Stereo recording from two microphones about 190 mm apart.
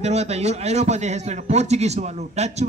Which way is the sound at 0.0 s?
35° right (ahead or behind).